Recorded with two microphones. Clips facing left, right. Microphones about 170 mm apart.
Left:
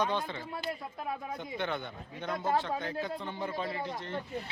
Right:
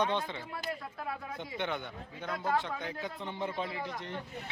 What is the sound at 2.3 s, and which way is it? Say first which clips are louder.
Speech: left 2 dB; 20° left (ahead or behind).